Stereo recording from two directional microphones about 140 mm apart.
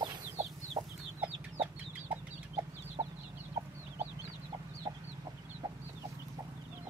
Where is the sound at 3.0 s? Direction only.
25° right (ahead or behind).